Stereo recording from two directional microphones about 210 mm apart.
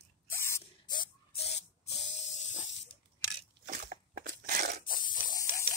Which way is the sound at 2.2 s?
35° left (ahead or behind).